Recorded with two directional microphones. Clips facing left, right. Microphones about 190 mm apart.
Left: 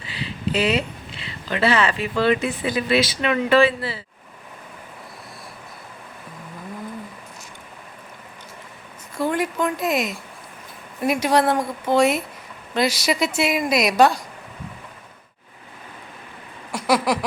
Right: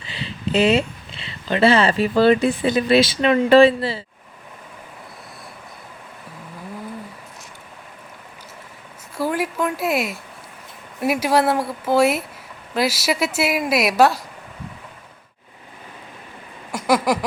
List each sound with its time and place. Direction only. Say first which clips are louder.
0.0 s speech: even; 25° right (ahead or behind)
9.1 s a woman's voice: even; 5° right (ahead or behind)
16.7 s a sound: right 1 dB; centre (ahead or behind)